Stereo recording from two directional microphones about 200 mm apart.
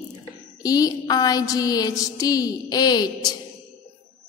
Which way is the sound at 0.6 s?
20° left (ahead or behind).